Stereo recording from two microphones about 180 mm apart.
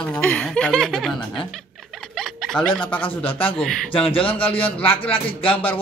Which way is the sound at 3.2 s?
30° left (ahead or behind).